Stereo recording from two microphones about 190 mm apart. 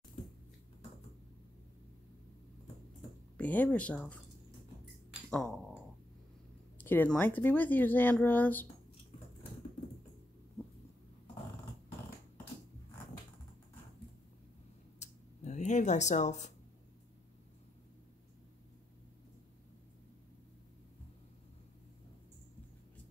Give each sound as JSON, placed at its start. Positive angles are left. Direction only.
{"t": 3.3, "sound": "speech", "side_deg": 10}
{"t": 5.3, "sound": "speech", "side_deg": 0}
{"t": 6.8, "sound": "speech", "side_deg": 10}
{"t": 15.0, "sound": "a sound", "side_deg": 40}